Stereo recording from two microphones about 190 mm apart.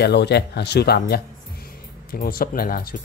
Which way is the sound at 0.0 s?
60° left (ahead or behind).